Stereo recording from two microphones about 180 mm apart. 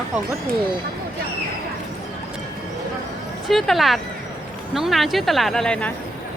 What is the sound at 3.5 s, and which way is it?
Speech, centre (ahead or behind).